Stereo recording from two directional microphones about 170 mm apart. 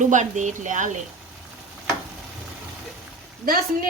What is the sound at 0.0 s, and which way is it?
Speech, 45° right (ahead or behind).